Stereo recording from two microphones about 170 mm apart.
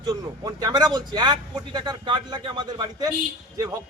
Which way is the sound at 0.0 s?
20° right (ahead or behind).